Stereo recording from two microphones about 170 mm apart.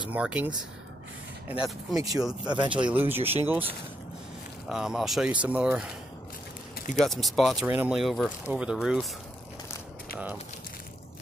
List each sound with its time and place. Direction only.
0.1 s speech: 5° right (ahead or behind)
1.5 s speech: 5° right (ahead or behind)
2.0 s speech: 20° right (ahead or behind)
2.9 s speech: 10° right (ahead or behind)
7.0 s speech: centre (ahead or behind)
7.6 s speech: 10° right (ahead or behind)